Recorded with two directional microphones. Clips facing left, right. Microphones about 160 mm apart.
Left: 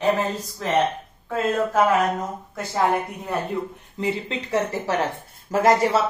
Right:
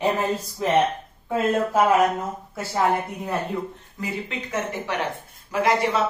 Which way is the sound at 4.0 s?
30° left (ahead or behind).